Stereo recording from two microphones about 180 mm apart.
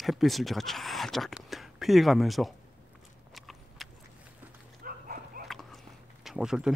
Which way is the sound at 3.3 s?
Centre (ahead or behind).